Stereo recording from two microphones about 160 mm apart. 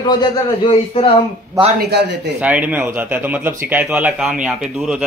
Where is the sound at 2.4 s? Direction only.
10° right (ahead or behind).